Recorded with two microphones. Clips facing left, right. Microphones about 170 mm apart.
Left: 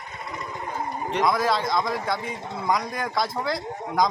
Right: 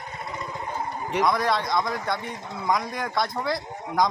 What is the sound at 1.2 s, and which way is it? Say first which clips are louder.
Speech: left 1 dB; centre (ahead or behind).